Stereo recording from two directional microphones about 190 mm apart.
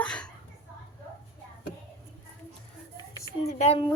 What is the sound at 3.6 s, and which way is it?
Speech, 30° left (ahead or behind).